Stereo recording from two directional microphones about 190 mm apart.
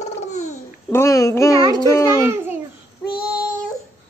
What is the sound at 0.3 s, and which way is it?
Babbling, 40° left (ahead or behind).